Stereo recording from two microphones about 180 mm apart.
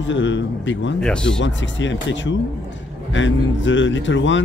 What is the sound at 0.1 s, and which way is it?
Speech, 90° left.